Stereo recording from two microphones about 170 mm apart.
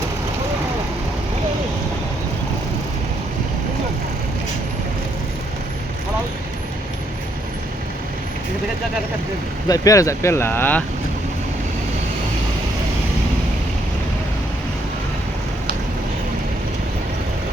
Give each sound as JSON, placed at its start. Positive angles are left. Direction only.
{"t": 9.6, "sound": "speech", "side_deg": 20}